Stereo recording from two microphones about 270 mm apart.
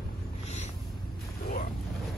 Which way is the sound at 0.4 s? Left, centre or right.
Left.